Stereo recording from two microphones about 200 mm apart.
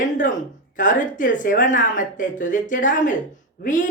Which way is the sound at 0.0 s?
40° left (ahead or behind).